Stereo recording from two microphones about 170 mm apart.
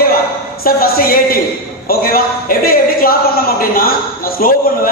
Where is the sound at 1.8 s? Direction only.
60° left (ahead or behind).